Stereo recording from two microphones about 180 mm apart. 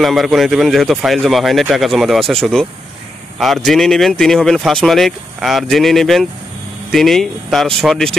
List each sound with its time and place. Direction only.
0.0 s speech: centre (ahead or behind)